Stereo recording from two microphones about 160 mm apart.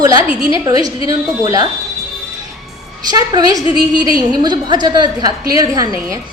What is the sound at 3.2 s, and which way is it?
A woman's voice, 20° right (ahead or behind).